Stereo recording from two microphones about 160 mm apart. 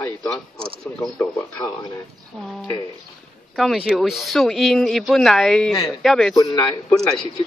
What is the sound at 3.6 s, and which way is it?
Speech, centre (ahead or behind).